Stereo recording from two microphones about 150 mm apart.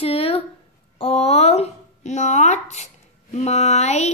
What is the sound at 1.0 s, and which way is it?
A woman's voice, 40° left (ahead or behind).